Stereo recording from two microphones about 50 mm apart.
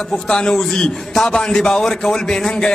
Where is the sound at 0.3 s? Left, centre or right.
Centre.